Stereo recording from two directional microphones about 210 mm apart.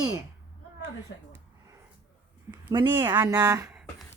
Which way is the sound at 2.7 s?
20° right (ahead or behind).